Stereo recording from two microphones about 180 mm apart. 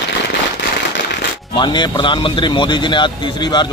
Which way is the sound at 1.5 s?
25° left (ahead or behind).